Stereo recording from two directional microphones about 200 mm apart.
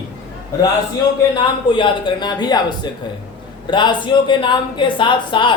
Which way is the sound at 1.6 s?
25° left (ahead or behind).